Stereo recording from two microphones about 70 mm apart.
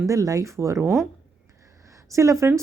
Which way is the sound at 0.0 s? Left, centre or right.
Right.